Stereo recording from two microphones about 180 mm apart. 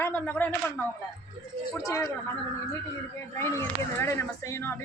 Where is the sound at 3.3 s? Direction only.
15° left (ahead or behind).